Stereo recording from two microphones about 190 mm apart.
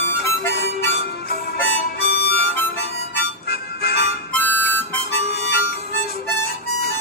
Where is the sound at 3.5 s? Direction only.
55° left (ahead or behind).